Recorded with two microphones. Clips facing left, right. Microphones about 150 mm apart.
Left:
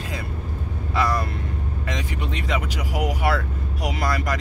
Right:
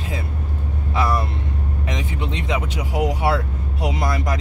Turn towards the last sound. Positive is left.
turn(degrees=-20)  # may be behind; listen again after turning